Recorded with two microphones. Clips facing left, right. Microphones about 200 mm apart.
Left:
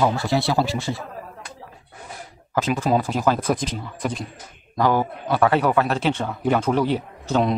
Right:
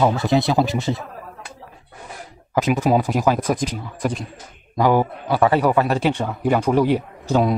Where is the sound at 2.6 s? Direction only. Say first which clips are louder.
Right 3 dB; 15° right (ahead or behind).